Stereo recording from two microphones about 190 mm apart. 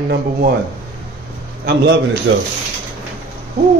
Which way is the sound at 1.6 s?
60° right (ahead or behind).